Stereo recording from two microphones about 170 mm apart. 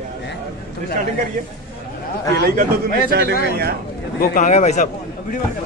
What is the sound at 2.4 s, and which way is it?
Speech, 65° right (ahead or behind).